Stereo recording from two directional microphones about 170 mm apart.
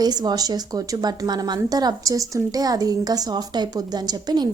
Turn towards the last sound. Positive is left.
turn(degrees=-25)  # may be behind; listen again after turning